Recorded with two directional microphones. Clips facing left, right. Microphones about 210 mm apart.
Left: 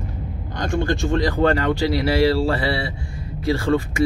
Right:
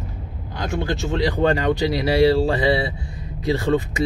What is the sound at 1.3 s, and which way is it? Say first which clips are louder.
Speech: right 1 dB; 15° right (ahead or behind).